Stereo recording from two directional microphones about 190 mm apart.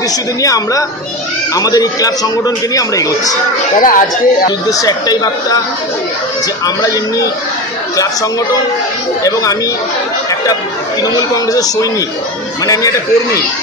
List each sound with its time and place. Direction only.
0.4 s a man's voice: 20° left (ahead or behind)
3.8 s speech: 45° left (ahead or behind)
4.5 s a man's voice: 20° left (ahead or behind)
6.6 s a man's voice: 20° left (ahead or behind)
11.0 s a man's voice: 20° left (ahead or behind)